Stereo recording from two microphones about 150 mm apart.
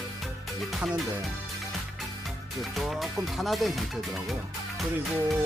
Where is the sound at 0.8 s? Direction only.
5° right (ahead or behind).